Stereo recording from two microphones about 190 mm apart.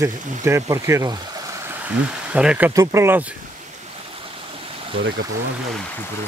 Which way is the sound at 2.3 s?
5° right (ahead or behind).